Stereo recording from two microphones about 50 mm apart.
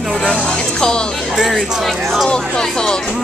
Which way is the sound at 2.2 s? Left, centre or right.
Centre.